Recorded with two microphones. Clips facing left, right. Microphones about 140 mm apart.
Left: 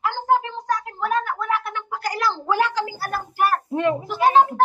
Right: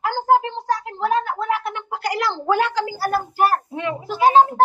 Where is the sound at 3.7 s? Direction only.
45° left (ahead or behind).